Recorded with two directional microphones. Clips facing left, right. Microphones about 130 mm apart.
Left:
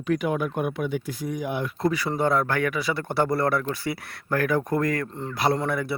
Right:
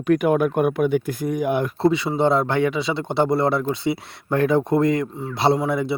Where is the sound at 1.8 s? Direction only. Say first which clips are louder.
Right 3 dB; 25° right (ahead or behind).